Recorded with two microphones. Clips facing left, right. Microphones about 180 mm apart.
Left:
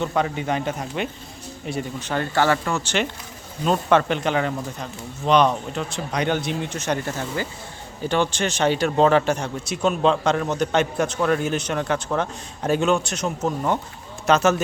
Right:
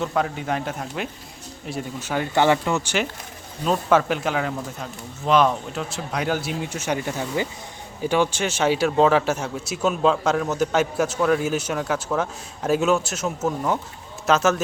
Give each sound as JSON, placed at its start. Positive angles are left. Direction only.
{"t": 0.0, "sound": "speech", "side_deg": 0}
{"t": 2.3, "sound": "speech", "side_deg": -20}
{"t": 3.7, "sound": "speech", "side_deg": -5}